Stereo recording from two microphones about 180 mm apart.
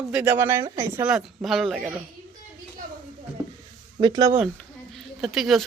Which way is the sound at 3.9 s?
25° right (ahead or behind).